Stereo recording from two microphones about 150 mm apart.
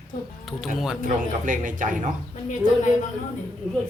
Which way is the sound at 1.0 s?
60° right (ahead or behind).